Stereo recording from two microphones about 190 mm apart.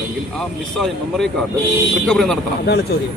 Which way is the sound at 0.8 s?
Centre (ahead or behind).